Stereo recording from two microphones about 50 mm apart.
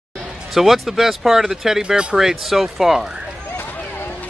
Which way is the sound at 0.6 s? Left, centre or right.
Centre.